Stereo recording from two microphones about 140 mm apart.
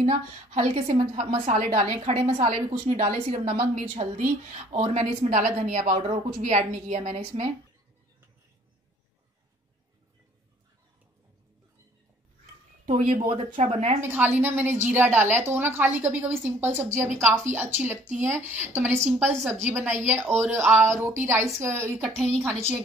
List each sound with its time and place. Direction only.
0.0 s a woman's voice: 45° right (ahead or behind)
1.4 s a woman's voice: 55° right (ahead or behind)
12.8 s a woman's voice: 60° right (ahead or behind)
13.6 s a woman's voice: 50° right (ahead or behind)
14.0 s a woman's voice: 15° right (ahead or behind)
19.9 s a woman's voice: 55° right (ahead or behind)
20.4 s a woman's voice: 15° right (ahead or behind)